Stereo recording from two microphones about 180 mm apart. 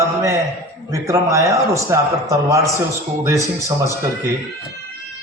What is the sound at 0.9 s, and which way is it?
A man's voice, 15° right (ahead or behind).